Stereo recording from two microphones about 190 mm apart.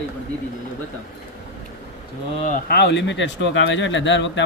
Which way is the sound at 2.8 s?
65° left (ahead or behind).